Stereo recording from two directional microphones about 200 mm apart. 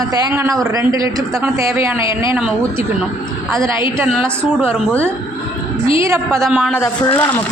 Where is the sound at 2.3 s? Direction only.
5° right (ahead or behind).